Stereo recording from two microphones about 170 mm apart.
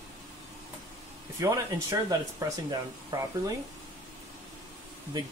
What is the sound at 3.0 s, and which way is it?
Speech, 20° right (ahead or behind).